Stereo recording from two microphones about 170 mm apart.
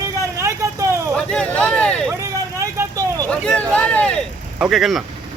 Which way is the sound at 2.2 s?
15° right (ahead or behind).